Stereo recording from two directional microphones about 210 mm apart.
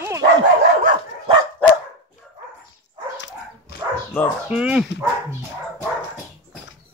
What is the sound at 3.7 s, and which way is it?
Dog, 50° left (ahead or behind).